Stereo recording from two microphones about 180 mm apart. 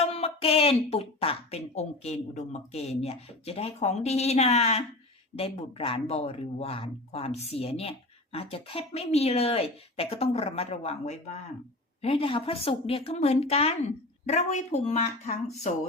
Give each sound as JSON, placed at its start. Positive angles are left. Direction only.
{"t": 0.0, "sound": "speech", "side_deg": 35}